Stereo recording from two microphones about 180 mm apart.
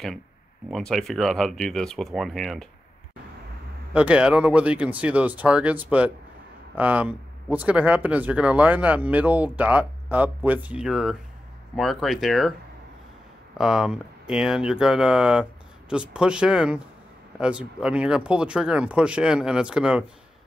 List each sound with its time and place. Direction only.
0.7 s speech: centre (ahead or behind)
3.9 s speech: 5° right (ahead or behind)
13.6 s speech: centre (ahead or behind)